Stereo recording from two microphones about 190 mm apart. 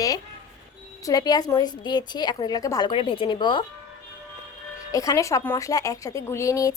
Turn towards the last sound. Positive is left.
turn(degrees=15)  # may be behind; listen again after turning